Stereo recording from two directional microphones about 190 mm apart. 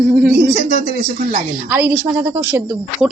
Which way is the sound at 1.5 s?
5° right (ahead or behind).